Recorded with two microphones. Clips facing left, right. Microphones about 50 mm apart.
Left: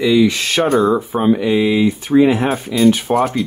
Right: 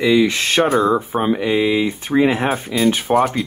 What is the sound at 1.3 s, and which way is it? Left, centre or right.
Speech, right.